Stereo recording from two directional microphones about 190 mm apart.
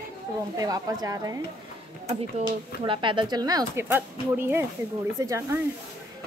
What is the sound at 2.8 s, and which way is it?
A woman's voice, 25° right (ahead or behind).